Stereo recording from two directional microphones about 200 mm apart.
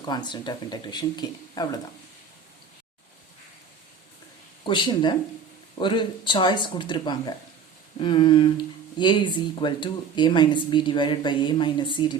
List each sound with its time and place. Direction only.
0.0 s speech: 20° left (ahead or behind)
4.6 s speech: 25° left (ahead or behind)